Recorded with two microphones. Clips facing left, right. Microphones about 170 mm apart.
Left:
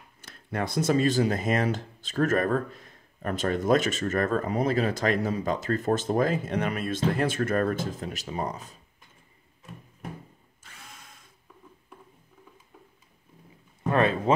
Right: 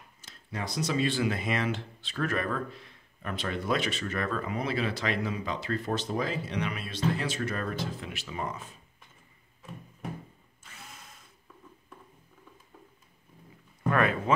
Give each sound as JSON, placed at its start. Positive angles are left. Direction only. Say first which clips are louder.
{"t": 0.2, "sound": "speech", "louder": "left 6 dB", "side_deg": 55}
{"t": 13.8, "sound": "speech", "louder": "left 3 dB", "side_deg": 30}